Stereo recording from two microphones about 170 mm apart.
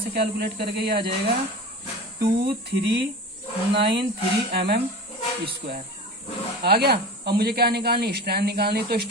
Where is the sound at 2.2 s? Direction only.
75° right (ahead or behind).